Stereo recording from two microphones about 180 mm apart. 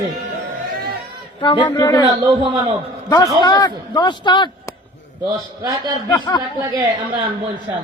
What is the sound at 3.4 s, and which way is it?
A man's voice, 25° left (ahead or behind).